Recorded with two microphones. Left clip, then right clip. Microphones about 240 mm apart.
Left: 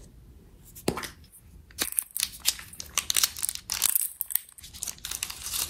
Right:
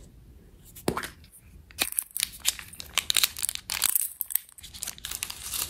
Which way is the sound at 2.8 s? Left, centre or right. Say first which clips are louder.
Right 2 dB; centre.